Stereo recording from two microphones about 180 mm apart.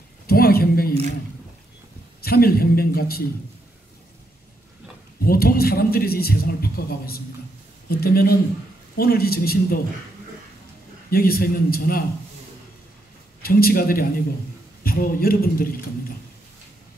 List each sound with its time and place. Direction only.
0.3 s a sound: 60° left (ahead or behind)
2.2 s a man's voice: 60° left (ahead or behind)
5.2 s a man's voice: 55° left (ahead or behind)
11.1 s a man's voice: 55° left (ahead or behind)
13.4 s a man's voice: 55° left (ahead or behind)